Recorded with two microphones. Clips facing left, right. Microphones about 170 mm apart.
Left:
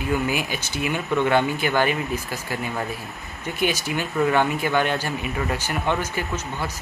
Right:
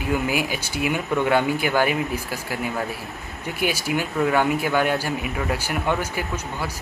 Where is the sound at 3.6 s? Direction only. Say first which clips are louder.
Even; 10° right (ahead or behind).